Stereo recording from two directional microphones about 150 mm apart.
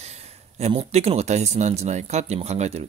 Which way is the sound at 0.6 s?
45° right (ahead or behind).